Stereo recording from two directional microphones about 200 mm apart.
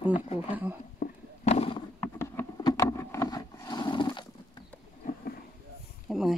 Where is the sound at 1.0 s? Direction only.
45° left (ahead or behind).